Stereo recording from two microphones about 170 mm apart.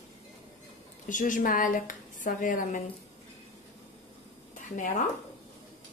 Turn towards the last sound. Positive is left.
turn(degrees=50)  # may be behind; listen again after turning